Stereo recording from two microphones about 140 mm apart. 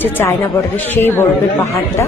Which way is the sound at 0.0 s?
15° left (ahead or behind).